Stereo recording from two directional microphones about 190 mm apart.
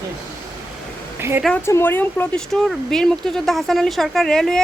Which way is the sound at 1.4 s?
10° left (ahead or behind).